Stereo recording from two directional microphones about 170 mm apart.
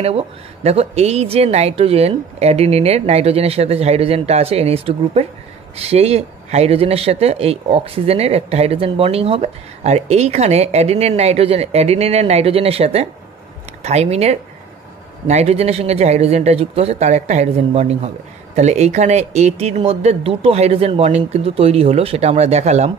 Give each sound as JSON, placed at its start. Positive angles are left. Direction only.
{"t": 0.7, "sound": "speech", "side_deg": -40}